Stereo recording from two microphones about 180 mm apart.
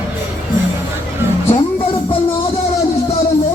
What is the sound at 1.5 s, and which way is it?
Music, 30° left (ahead or behind).